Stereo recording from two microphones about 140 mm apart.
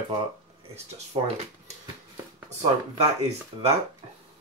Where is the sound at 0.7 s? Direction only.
50° right (ahead or behind).